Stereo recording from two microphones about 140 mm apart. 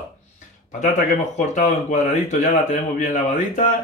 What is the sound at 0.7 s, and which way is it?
Speech, 60° left (ahead or behind).